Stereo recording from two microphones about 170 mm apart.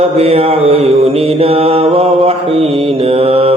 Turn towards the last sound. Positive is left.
turn(degrees=-35)  # may be behind; listen again after turning